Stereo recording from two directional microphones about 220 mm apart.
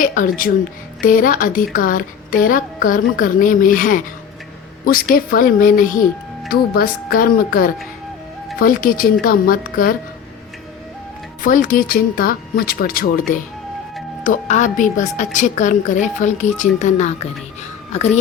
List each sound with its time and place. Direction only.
0.0 s a woman's voice: 35° left (ahead or behind)
11.4 s a woman's voice: 35° left (ahead or behind)